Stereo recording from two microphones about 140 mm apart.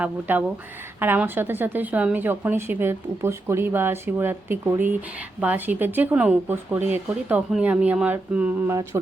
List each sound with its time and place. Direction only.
0.0 s a woman's voice: 10° right (ahead or behind)